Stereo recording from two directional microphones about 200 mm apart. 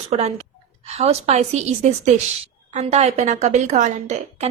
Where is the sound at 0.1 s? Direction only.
30° right (ahead or behind).